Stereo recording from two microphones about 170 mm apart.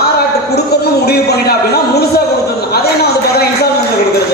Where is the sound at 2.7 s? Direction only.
70° left (ahead or behind).